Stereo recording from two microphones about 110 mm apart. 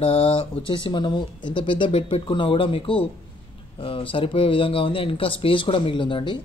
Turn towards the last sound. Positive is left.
turn(degrees=45)  # may be behind; listen again after turning